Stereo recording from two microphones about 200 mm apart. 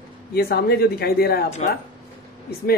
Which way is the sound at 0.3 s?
50° left (ahead or behind).